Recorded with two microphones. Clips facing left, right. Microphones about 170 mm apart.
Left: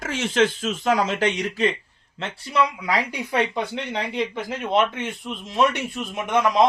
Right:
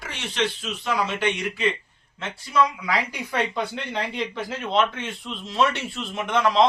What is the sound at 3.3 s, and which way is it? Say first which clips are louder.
A man's voice: left 2 dB; 20° left (ahead or behind).